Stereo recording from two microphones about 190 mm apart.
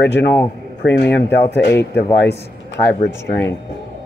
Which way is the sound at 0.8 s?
60° left (ahead or behind).